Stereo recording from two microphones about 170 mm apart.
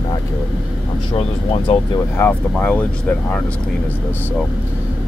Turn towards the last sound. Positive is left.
turn(degrees=10)  # may be behind; listen again after turning